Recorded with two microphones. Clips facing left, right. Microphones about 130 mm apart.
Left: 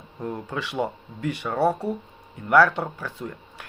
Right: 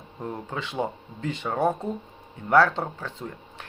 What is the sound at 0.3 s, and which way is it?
Speech, 25° right (ahead or behind).